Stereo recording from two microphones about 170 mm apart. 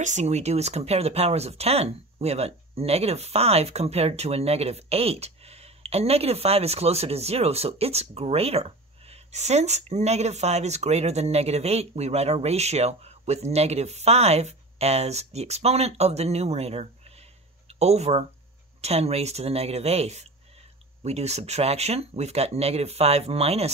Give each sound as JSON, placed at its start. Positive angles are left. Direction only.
{"t": 0.0, "sound": "speech", "side_deg": -45}